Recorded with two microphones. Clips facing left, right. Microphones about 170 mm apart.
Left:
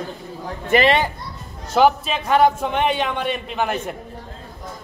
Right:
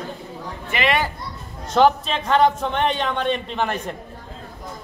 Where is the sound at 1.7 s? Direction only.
5° left (ahead or behind).